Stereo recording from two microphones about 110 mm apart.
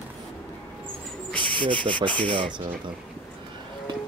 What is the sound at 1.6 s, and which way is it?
Rub, 50° right (ahead or behind).